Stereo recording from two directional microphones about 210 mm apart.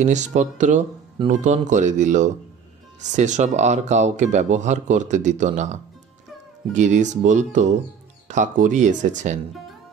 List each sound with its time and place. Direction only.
0.0 s speech: 35° right (ahead or behind)